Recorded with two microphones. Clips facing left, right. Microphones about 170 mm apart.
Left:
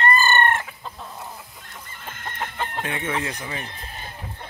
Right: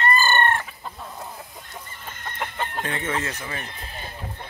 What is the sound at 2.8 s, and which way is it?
Speech, 10° left (ahead or behind).